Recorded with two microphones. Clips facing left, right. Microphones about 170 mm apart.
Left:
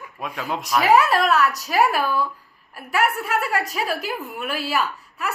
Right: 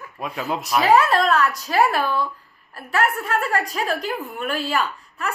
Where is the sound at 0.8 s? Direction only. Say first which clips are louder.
Even; 10° left (ahead or behind).